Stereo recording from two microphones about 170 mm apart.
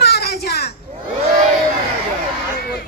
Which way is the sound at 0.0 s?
70° left (ahead or behind).